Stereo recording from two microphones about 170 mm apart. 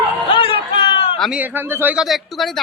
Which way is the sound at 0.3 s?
30° left (ahead or behind).